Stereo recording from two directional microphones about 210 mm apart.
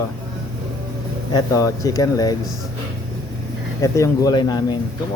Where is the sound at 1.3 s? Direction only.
15° left (ahead or behind).